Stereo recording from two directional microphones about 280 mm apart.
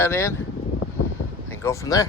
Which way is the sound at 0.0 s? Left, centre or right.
Centre.